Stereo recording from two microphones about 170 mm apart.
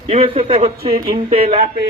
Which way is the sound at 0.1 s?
30° right (ahead or behind).